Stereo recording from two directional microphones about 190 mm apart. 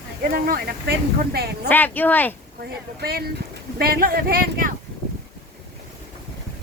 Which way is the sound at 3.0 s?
55° right (ahead or behind).